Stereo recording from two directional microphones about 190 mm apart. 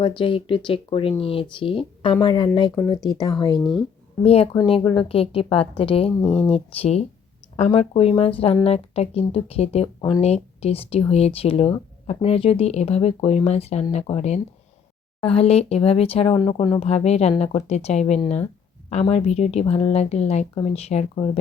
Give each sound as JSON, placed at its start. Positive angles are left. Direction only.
{"t": 0.0, "sound": "a woman's voice", "side_deg": 25}
{"t": 3.6, "sound": "speech", "side_deg": 0}
{"t": 4.2, "sound": "a woman's voice", "side_deg": 35}